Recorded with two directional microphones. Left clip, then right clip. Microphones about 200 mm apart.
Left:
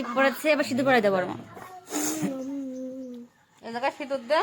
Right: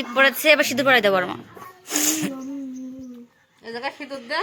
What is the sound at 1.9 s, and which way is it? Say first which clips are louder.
Music: right 6 dB; 5° left (ahead or behind).